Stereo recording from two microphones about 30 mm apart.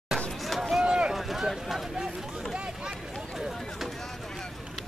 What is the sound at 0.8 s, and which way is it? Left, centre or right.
Run, right.